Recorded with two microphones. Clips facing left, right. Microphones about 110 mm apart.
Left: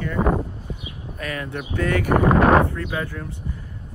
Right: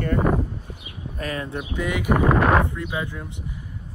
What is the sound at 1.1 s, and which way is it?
Speech, 30° right (ahead or behind).